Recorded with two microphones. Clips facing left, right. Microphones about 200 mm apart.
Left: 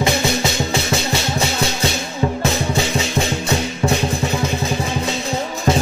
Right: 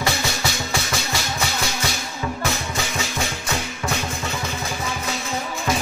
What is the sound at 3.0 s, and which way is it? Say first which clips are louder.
Music: left 7 dB; 25° left (ahead or behind).